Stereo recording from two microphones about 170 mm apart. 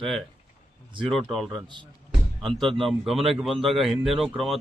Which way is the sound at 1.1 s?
Centre (ahead or behind).